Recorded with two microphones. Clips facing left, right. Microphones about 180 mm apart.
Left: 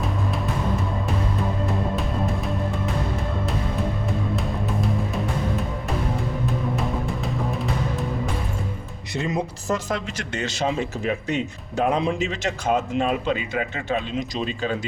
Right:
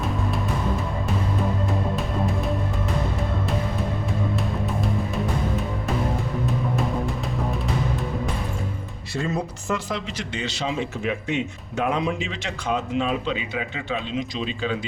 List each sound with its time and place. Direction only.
2.0 s music: centre (ahead or behind)
9.1 s speech: 20° left (ahead or behind)
9.6 s speech: 45° left (ahead or behind)